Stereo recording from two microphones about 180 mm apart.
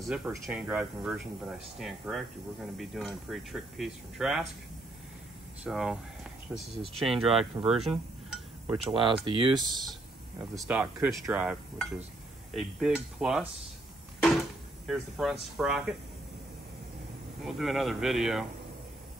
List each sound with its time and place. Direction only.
0.0 s speech: centre (ahead or behind)
5.6 s speech: centre (ahead or behind)
7.0 s speech: centre (ahead or behind)
8.8 s speech: 30° right (ahead or behind)
10.5 s speech: centre (ahead or behind)
12.5 s speech: 5° right (ahead or behind)
14.9 s speech: centre (ahead or behind)
17.5 s speech: centre (ahead or behind)